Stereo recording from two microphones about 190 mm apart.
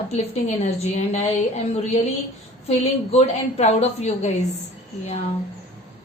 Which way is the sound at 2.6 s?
35° left (ahead or behind).